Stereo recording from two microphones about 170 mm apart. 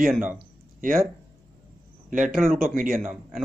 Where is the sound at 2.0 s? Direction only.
50° right (ahead or behind).